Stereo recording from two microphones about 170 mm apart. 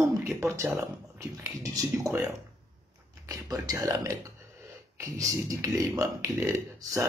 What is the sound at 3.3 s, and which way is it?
Speech, 20° right (ahead or behind).